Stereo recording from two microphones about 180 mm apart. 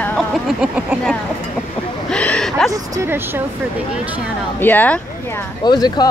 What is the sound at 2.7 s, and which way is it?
Speech, 15° right (ahead or behind).